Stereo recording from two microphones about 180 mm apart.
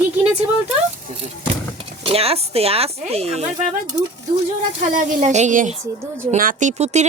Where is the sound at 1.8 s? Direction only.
35° right (ahead or behind).